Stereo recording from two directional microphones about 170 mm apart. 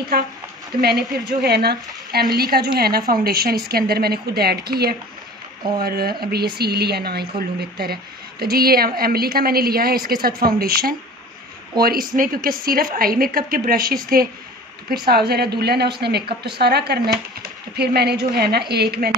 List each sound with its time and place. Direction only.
0.7 s a woman's voice: 70° right (ahead or behind)